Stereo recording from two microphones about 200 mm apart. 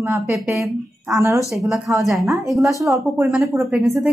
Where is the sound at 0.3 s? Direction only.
Centre (ahead or behind).